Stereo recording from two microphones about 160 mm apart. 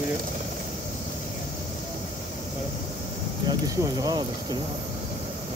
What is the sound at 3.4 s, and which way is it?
Speech, 25° right (ahead or behind).